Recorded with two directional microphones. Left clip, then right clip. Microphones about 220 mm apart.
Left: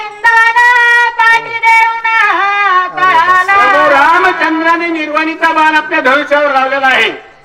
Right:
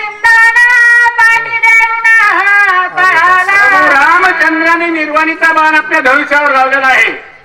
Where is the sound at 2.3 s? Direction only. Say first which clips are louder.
Right 2 dB; 20° right (ahead or behind).